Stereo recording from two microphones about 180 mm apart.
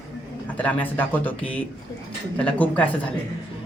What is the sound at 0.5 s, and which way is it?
Speech, 10° left (ahead or behind).